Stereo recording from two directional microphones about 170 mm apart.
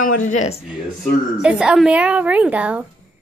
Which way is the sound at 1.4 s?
5° right (ahead or behind).